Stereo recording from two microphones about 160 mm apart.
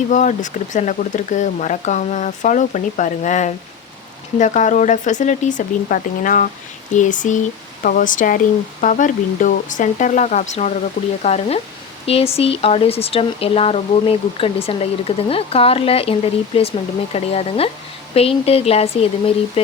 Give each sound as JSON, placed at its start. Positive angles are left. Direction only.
{"t": 0.1, "sound": "speech", "side_deg": 50}